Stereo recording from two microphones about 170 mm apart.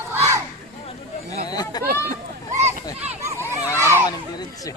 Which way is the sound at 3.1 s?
15° right (ahead or behind).